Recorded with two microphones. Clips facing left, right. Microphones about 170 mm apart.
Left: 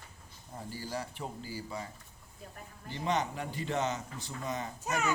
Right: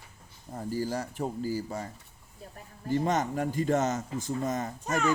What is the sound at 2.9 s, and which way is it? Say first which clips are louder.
Speech: right 6 dB; 45° right (ahead or behind).